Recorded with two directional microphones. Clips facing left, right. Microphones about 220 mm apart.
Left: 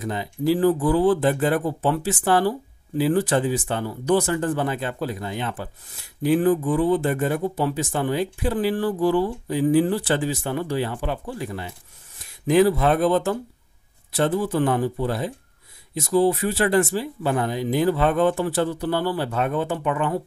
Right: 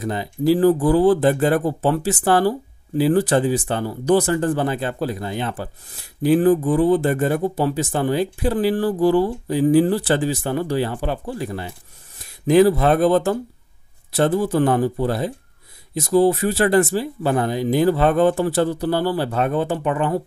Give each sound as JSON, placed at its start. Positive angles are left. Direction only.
{"t": 0.0, "sound": "speech", "side_deg": -35}